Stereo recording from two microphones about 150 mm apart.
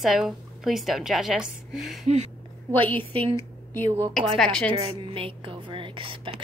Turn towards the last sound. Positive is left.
turn(degrees=-35)  # may be behind; listen again after turning